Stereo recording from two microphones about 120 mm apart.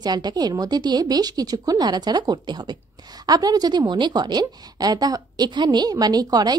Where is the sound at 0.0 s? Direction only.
35° right (ahead or behind).